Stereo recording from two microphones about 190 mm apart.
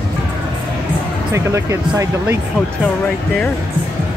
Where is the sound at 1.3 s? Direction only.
15° right (ahead or behind).